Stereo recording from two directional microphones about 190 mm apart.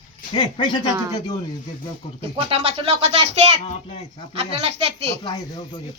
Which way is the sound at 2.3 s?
30° right (ahead or behind).